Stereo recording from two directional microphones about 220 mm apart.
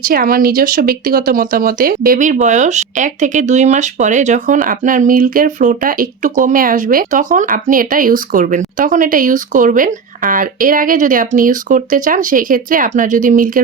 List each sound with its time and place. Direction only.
0.0 s speech: 40° right (ahead or behind)